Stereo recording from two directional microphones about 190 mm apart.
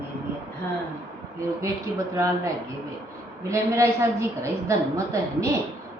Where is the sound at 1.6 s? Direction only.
15° right (ahead or behind).